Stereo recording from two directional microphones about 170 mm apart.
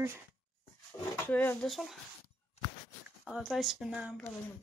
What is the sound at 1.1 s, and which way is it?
Speech, 10° left (ahead or behind).